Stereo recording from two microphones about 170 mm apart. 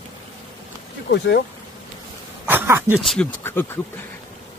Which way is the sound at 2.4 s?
15° right (ahead or behind).